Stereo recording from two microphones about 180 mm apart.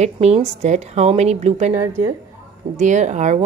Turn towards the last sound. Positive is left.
turn(degrees=-40)  # may be behind; listen again after turning